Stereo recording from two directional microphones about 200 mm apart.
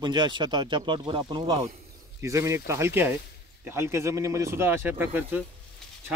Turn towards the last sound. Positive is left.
turn(degrees=-10)  # may be behind; listen again after turning